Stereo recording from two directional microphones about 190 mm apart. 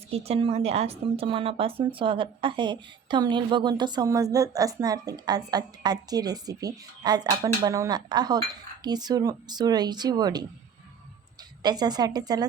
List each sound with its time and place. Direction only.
0.1 s a woman's voice: 30° right (ahead or behind)
11.6 s a woman's voice: 20° right (ahead or behind)